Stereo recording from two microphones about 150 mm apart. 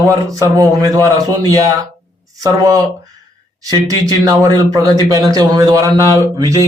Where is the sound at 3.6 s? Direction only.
25° right (ahead or behind).